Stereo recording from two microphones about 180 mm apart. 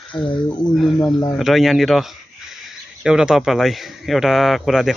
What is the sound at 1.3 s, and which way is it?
A man's voice, centre (ahead or behind).